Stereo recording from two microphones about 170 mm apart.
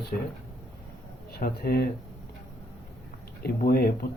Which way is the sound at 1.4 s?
70° left (ahead or behind).